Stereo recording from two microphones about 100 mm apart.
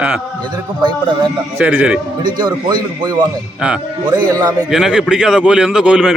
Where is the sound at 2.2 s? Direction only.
45° right (ahead or behind).